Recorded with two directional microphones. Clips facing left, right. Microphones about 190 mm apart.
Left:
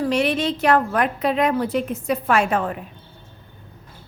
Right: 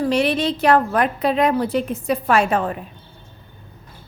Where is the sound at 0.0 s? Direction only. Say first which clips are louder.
Right 2 dB; 35° right (ahead or behind).